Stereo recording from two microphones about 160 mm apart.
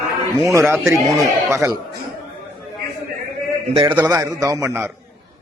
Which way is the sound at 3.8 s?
15° right (ahead or behind).